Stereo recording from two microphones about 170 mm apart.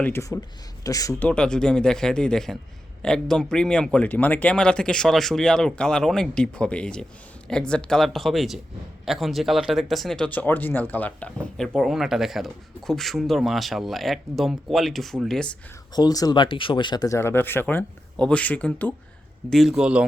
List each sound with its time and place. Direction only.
0.0 s speech: 15° left (ahead or behind)
1.3 s speech: 5° left (ahead or behind)
16.0 s speech: 25° left (ahead or behind); by 20.1 s 5° right (ahead or behind)